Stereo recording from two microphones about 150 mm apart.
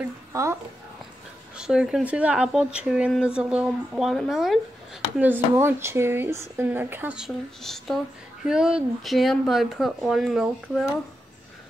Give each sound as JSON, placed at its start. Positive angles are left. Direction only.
{"t": 0.3, "sound": "speech", "side_deg": -20}
{"t": 1.6, "sound": "speech", "side_deg": -5}
{"t": 5.1, "sound": "speech", "side_deg": -10}